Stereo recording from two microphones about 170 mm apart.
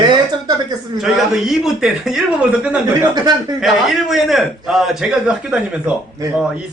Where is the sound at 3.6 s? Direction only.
Centre (ahead or behind).